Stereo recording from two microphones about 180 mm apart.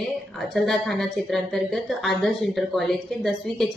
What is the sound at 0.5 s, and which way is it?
A woman's voice, centre (ahead or behind).